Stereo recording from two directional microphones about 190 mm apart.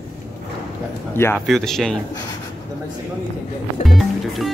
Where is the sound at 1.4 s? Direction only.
Centre (ahead or behind).